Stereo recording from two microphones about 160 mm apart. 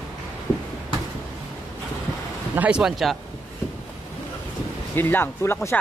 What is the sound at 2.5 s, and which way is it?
Speech, 10° right (ahead or behind).